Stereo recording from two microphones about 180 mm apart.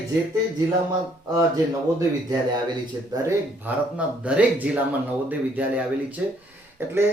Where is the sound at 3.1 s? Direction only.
15° right (ahead or behind).